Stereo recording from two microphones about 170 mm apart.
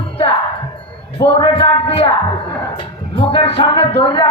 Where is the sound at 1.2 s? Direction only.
30° left (ahead or behind).